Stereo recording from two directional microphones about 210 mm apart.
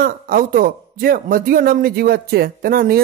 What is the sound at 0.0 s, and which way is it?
A man's voice, 40° right (ahead or behind).